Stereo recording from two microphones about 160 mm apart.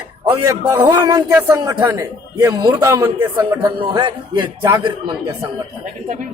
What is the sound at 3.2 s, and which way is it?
Speech, 15° right (ahead or behind).